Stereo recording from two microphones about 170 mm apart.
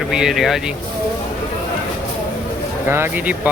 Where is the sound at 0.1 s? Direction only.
5° right (ahead or behind).